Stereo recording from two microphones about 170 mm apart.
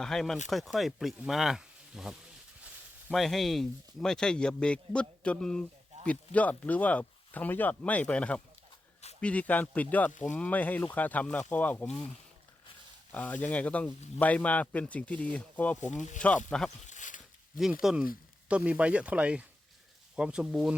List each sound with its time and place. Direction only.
0.0 s speech: centre (ahead or behind)
10.1 s speech: 45° left (ahead or behind)
10.3 s speech: 10° left (ahead or behind)
13.1 s speech: 10° left (ahead or behind)
15.8 s speech: 45° left (ahead or behind)
16.5 s speech: 5° left (ahead or behind)
16.8 s a sound: 45° left (ahead or behind)
17.6 s speech: centre (ahead or behind)